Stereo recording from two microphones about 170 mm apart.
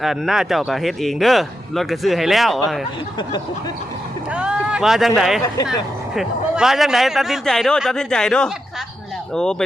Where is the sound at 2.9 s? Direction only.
25° left (ahead or behind).